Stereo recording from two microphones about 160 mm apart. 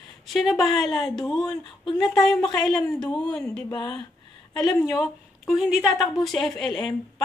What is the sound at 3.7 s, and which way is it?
Speech, 25° left (ahead or behind).